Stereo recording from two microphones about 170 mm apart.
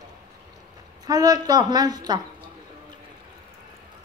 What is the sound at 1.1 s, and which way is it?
A woman's voice, 20° right (ahead or behind).